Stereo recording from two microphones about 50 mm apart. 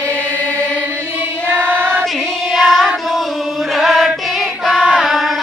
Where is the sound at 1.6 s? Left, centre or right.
Right.